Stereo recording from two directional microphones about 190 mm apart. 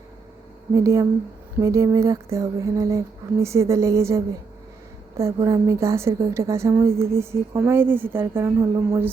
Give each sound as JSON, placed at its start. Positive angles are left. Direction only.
{"t": 0.7, "sound": "a woman's voice", "side_deg": -15}